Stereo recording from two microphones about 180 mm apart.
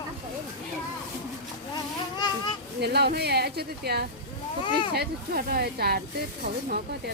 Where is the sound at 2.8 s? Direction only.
65° right (ahead or behind).